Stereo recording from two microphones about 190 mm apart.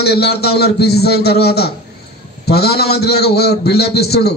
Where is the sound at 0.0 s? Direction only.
60° left (ahead or behind).